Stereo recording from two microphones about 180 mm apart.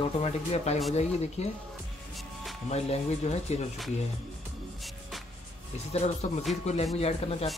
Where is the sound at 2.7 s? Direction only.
35° left (ahead or behind).